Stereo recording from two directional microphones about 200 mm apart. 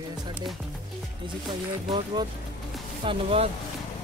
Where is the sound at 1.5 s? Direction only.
25° right (ahead or behind).